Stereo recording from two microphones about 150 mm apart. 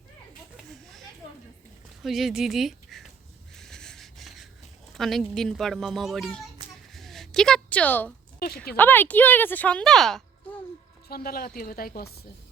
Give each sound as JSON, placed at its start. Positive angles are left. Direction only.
{"t": 0.5, "sound": "a sound", "side_deg": 0}
{"t": 2.0, "sound": "speech", "side_deg": 0}
{"t": 3.5, "sound": "wheeze", "side_deg": 5}
{"t": 4.9, "sound": "a child's voice", "side_deg": 0}
{"t": 6.9, "sound": "a sound", "side_deg": 0}
{"t": 8.4, "sound": "speech", "side_deg": 85}
{"t": 8.7, "sound": "speech", "side_deg": 10}
{"t": 11.1, "sound": "speech", "side_deg": 80}